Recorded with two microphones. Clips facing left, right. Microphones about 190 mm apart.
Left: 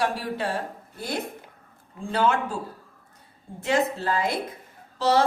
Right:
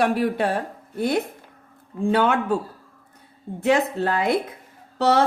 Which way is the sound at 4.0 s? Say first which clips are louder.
Right 4 dB; 60° right (ahead or behind).